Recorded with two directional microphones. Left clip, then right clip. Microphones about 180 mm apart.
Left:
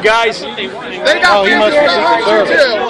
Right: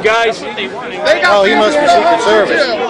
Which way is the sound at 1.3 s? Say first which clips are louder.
Even; 10° right (ahead or behind).